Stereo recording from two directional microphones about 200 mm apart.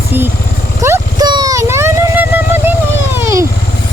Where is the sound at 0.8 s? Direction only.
15° right (ahead or behind).